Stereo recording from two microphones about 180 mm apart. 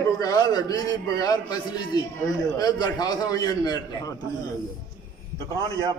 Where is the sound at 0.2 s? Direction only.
20° left (ahead or behind).